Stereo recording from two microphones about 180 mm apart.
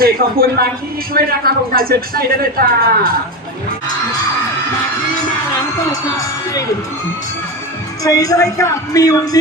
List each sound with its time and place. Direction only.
0.0 s speech: 55° right (ahead or behind)
5.9 s speech: 20° left (ahead or behind)
8.0 s speech: 20° left (ahead or behind)